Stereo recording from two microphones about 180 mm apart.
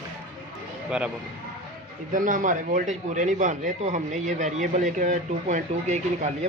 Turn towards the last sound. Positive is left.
turn(degrees=-40)  # may be behind; listen again after turning